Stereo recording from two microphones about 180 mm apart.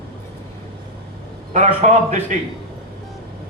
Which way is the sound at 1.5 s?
40° right (ahead or behind).